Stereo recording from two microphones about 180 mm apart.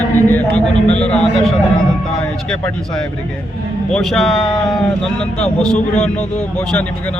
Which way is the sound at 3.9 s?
Centre (ahead or behind).